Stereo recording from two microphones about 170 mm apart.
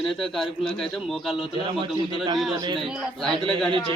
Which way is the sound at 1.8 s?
30° right (ahead or behind).